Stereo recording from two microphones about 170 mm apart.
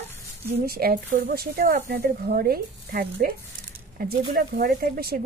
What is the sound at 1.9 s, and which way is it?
A woman's voice, 65° right (ahead or behind).